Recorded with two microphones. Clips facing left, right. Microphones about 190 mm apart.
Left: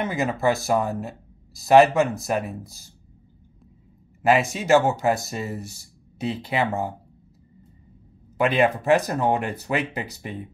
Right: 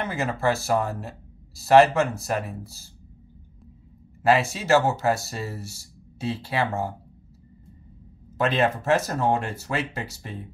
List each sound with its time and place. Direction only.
0.0 s speech: 15° left (ahead or behind)
4.2 s speech: 15° left (ahead or behind)
8.4 s speech: 15° left (ahead or behind)